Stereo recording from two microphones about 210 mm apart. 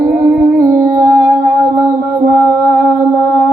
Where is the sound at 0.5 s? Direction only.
40° right (ahead or behind).